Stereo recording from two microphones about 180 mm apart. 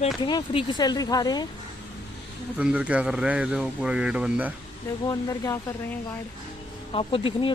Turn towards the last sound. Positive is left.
turn(degrees=30)  # may be behind; listen again after turning